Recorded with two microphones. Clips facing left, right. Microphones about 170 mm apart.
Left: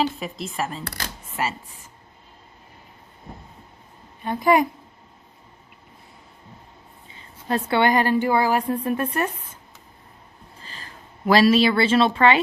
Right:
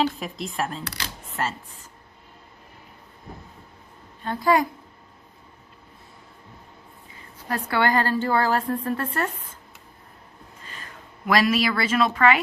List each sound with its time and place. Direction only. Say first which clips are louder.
0.0 s speech: even; centre (ahead or behind)
0.9 s speech: left 1 dB; 50° left (ahead or behind)
1.4 s a woman's voice: left 1 dB; 10° left (ahead or behind)
4.2 s a woman's voice: left 2 dB; 15° left (ahead or behind)
7.1 s a woman's voice: left 5 dB; 25° left (ahead or behind)
10.6 s speech: even; 30° left (ahead or behind)